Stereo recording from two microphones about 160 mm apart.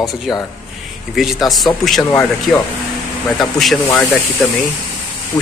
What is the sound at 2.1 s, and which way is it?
Speech, 15° left (ahead or behind).